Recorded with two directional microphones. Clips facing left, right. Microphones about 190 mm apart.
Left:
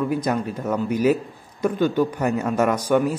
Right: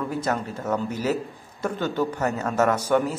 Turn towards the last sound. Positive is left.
turn(degrees=15)  # may be behind; listen again after turning